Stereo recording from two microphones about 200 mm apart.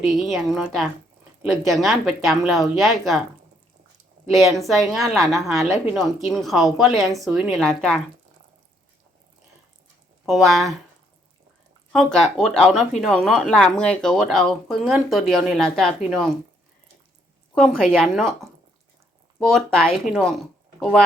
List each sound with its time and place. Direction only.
0.3 s speech: centre (ahead or behind)
4.3 s speech: centre (ahead or behind)
10.2 s speech: centre (ahead or behind)
11.9 s speech: 5° left (ahead or behind)
17.5 s a woman's voice: centre (ahead or behind)
19.5 s speech: centre (ahead or behind)